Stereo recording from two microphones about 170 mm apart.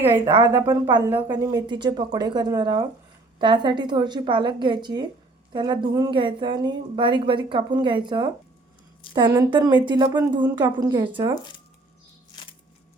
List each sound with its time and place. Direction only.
0.0 s a woman's voice: 15° right (ahead or behind)